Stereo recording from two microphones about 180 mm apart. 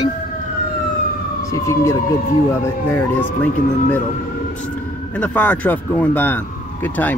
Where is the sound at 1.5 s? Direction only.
15° left (ahead or behind).